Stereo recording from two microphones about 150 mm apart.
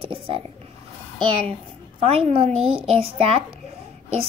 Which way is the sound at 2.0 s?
40° right (ahead or behind).